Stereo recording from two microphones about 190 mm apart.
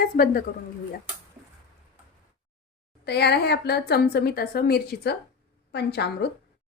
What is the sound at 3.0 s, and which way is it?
A woman's voice, 60° left (ahead or behind).